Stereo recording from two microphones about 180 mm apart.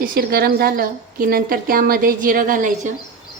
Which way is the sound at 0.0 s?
55° right (ahead or behind).